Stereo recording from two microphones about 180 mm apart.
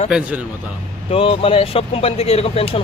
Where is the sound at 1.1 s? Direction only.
30° left (ahead or behind).